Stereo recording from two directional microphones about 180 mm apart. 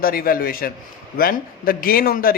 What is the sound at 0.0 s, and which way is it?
A man's voice, 55° left (ahead or behind).